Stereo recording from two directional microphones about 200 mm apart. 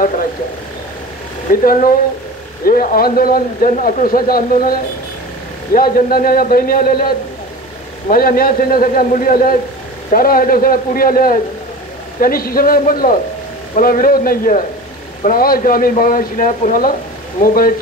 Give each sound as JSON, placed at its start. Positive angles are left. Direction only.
{"t": 1.5, "sound": "speech", "side_deg": 45}
{"t": 5.8, "sound": "speech", "side_deg": 45}